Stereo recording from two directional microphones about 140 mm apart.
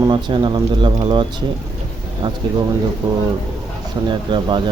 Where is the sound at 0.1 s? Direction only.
35° right (ahead or behind).